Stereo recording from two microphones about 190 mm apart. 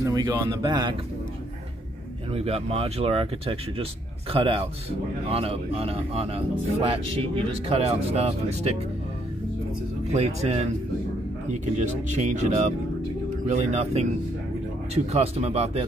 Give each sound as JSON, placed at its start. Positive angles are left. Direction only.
{"t": 0.0, "sound": "speech", "side_deg": -20}
{"t": 2.3, "sound": "a man's voice", "side_deg": -30}
{"t": 10.1, "sound": "a man's voice", "side_deg": -35}
{"t": 15.0, "sound": "a man's voice", "side_deg": -35}